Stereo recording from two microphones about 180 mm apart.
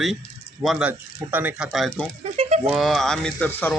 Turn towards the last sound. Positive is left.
turn(degrees=10)  # may be behind; listen again after turning